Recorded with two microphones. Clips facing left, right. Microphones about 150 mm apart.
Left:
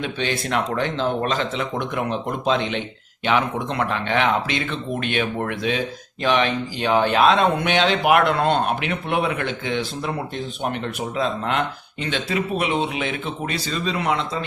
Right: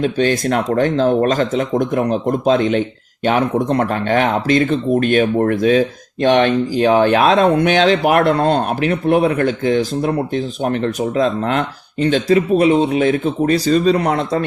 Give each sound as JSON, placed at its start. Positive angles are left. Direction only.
{"t": 0.0, "sound": "speech", "side_deg": -45}